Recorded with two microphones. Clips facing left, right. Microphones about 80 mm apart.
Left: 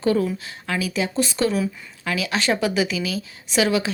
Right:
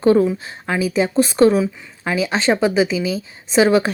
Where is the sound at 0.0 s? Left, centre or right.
Right.